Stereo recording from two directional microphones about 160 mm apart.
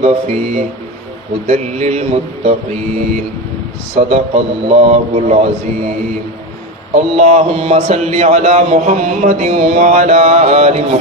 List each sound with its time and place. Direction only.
0.0 s speech: 45° right (ahead or behind)
3.9 s speech: 40° right (ahead or behind)
6.9 s speech: 45° right (ahead or behind)